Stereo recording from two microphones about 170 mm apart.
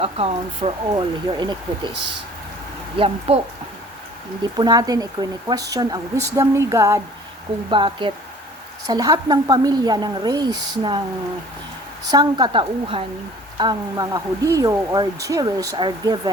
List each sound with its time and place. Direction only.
0.0 s speech: 35° right (ahead or behind)
3.0 s speech: 35° right (ahead or behind)
4.5 s speech: 25° right (ahead or behind)
7.7 s speech: 30° right (ahead or behind)
12.1 s speech: 25° right (ahead or behind)